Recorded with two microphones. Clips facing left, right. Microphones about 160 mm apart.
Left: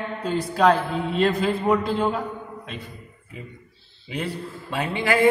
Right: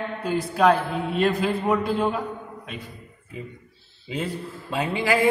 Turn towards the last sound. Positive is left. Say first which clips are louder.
# even
turn(degrees=-15)  # may be behind; listen again after turning